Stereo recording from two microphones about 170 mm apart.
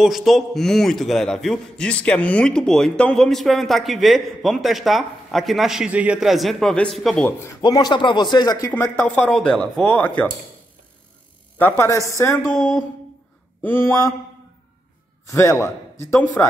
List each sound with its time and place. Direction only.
0.0 s a man's voice: centre (ahead or behind)
7.2 s speech: 15° left (ahead or behind)
7.6 s speech: 25° left (ahead or behind)
8.7 s speech: 10° left (ahead or behind)
11.5 s speech: 10° left (ahead or behind)
12.5 s a man's voice: centre (ahead or behind)
13.6 s speech: 15° left (ahead or behind)
15.2 s speech: 20° left (ahead or behind)